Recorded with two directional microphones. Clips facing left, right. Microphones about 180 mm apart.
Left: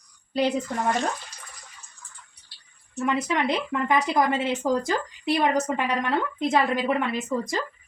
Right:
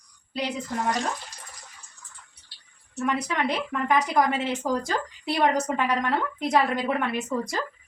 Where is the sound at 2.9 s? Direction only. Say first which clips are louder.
Left 2 dB; 25° left (ahead or behind).